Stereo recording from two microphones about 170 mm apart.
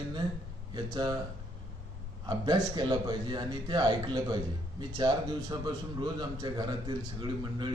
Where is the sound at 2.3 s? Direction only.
25° right (ahead or behind).